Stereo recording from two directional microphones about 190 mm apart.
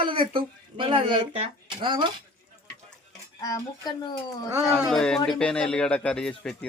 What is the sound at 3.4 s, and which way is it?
Speech, 20° left (ahead or behind).